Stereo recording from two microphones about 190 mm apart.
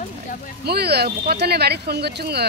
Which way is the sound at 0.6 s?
55° right (ahead or behind).